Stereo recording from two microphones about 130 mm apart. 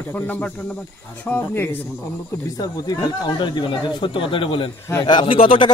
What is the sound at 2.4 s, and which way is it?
Speech, 30° left (ahead or behind).